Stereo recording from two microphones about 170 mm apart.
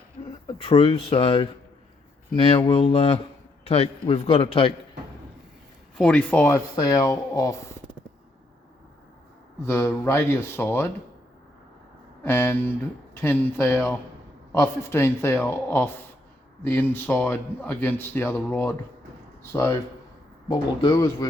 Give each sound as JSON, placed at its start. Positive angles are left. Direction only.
{"t": 0.4, "sound": "speech", "side_deg": 35}
{"t": 6.0, "sound": "a man's voice", "side_deg": 5}
{"t": 6.7, "sound": "speech", "side_deg": 20}
{"t": 9.6, "sound": "a man's voice", "side_deg": 15}
{"t": 12.2, "sound": "a man's voice", "side_deg": 15}